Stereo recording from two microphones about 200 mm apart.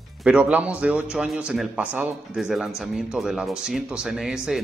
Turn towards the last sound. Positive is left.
turn(degrees=0)  # may be behind; listen again after turning